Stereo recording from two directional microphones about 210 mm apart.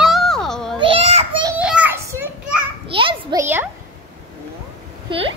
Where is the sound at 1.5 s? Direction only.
5° right (ahead or behind).